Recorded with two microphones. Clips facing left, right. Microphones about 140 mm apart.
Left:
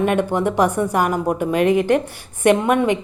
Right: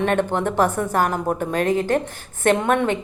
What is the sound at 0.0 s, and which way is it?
A woman's voice, 10° left (ahead or behind).